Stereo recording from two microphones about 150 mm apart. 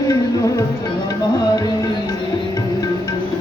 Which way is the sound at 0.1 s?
20° left (ahead or behind).